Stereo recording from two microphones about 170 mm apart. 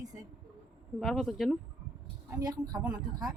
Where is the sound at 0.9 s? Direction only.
Centre (ahead or behind).